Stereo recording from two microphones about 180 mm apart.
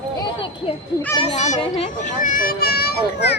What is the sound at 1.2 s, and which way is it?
Speech, 40° left (ahead or behind).